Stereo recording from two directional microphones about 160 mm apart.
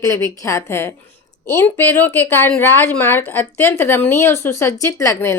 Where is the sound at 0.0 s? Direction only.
20° left (ahead or behind).